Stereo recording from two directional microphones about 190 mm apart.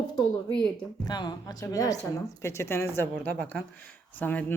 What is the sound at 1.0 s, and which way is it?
Speech, 20° left (ahead or behind).